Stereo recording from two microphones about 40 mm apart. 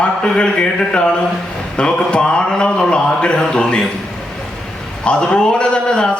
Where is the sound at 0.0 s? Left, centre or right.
Left.